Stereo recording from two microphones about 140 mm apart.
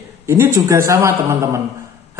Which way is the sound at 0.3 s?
20° right (ahead or behind).